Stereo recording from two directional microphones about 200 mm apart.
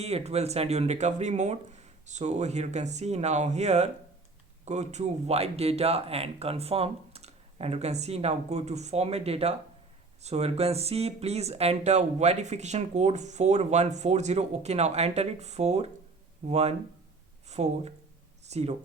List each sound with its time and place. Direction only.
0.0 s speech: 30° right (ahead or behind)